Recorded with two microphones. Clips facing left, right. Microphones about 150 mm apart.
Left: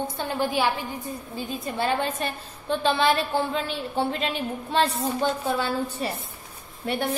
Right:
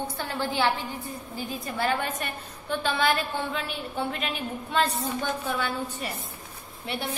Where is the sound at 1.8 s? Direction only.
25° left (ahead or behind).